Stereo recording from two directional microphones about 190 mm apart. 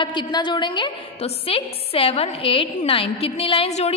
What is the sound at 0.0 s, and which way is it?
A woman's voice, 25° left (ahead or behind).